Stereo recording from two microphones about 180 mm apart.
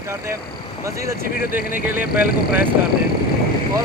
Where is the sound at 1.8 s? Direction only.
10° right (ahead or behind).